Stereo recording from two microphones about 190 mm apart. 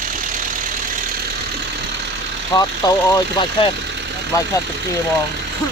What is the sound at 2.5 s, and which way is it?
Speech, 20° left (ahead or behind).